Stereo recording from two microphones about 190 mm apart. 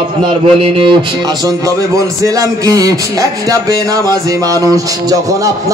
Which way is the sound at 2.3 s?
20° right (ahead or behind).